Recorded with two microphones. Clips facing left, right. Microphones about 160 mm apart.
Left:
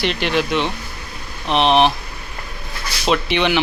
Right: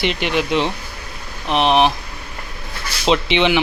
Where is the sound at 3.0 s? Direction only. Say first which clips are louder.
Right 2 dB; 20° right (ahead or behind).